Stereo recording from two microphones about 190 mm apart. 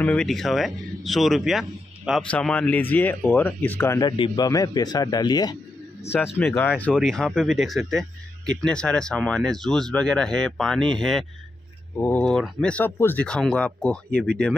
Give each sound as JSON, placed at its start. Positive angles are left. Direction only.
{"t": 0.0, "sound": "a man's voice", "side_deg": 5}
{"t": 6.4, "sound": "speech", "side_deg": 10}